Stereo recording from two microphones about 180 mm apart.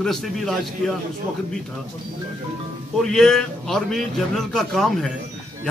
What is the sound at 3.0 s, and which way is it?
A man's voice, 5° left (ahead or behind).